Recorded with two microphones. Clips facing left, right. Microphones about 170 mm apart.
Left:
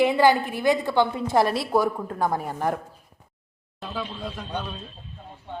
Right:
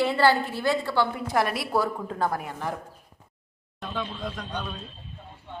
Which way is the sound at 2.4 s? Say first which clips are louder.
Left 6 dB; 40° left (ahead or behind).